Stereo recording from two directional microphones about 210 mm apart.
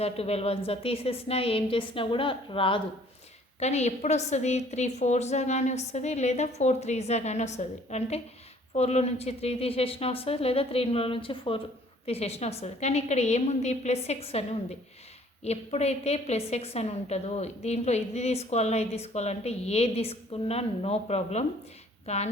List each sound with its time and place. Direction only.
0.0 s a woman's voice: 30° left (ahead or behind)
15.4 s a woman's voice: 30° left (ahead or behind)